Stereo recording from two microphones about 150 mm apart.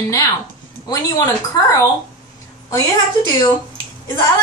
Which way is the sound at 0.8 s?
20° left (ahead or behind).